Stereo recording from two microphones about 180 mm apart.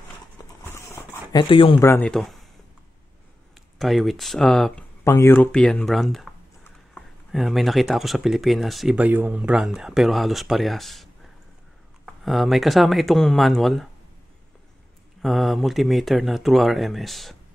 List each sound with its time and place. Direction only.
0.4 s clip-clop: 20° left (ahead or behind)
0.7 s a sound: 15° left (ahead or behind)
1.5 s speech: 30° left (ahead or behind)
1.8 s a man's voice: 15° left (ahead or behind)
2.0 s speech: centre (ahead or behind)
3.7 s speech: centre (ahead or behind)
5.0 s speech: 15° left (ahead or behind)
12.1 s speech: centre (ahead or behind)
15.2 s speech: centre (ahead or behind)